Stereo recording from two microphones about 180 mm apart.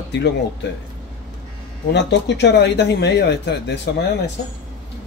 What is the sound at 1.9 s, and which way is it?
Speech, 70° left (ahead or behind).